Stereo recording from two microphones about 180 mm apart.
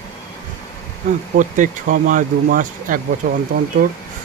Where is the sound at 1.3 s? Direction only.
50° right (ahead or behind).